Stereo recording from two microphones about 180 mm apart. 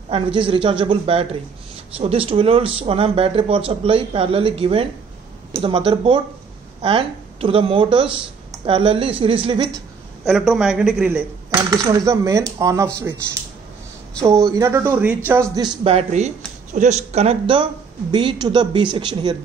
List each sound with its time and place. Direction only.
0.1 s speech: 30° right (ahead or behind)
10.2 s a man's voice: centre (ahead or behind)
11.7 s speech: 20° right (ahead or behind)
14.2 s speech: 15° right (ahead or behind)
15.8 s speech: 35° right (ahead or behind)